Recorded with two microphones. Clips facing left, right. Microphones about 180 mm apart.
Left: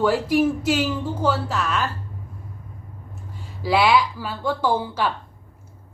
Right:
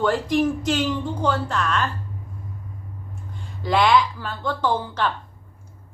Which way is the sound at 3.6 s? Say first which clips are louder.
Even; 5° left (ahead or behind).